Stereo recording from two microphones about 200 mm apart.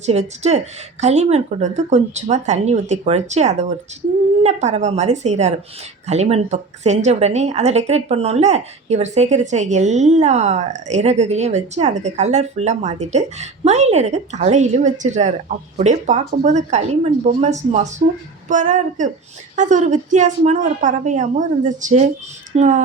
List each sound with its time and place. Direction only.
0.0 s a woman's voice: 35° right (ahead or behind)